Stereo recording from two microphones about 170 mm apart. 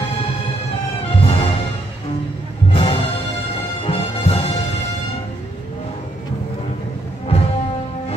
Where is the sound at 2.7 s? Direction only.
35° left (ahead or behind).